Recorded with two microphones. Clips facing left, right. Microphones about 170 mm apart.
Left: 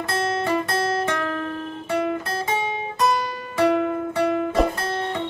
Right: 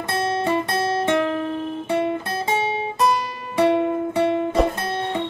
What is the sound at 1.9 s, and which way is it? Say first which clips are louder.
Guitar: even; 25° right (ahead or behind).